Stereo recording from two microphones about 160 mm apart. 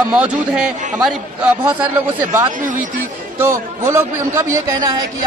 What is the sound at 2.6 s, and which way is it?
Speech, 55° right (ahead or behind).